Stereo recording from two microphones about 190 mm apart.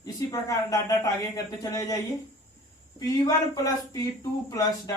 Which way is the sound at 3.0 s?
20° left (ahead or behind).